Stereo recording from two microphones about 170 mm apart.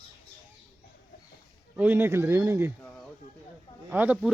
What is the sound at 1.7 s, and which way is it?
Speech, 10° right (ahead or behind).